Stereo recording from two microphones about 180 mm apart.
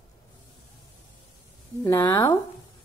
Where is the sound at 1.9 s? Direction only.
15° left (ahead or behind).